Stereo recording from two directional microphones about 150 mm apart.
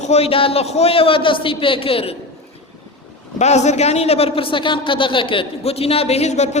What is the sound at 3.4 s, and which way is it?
A man's voice, 50° left (ahead or behind).